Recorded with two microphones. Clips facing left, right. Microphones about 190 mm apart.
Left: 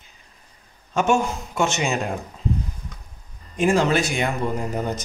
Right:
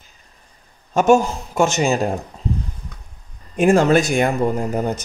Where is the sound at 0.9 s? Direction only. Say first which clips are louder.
Right 6 dB; 40° right (ahead or behind).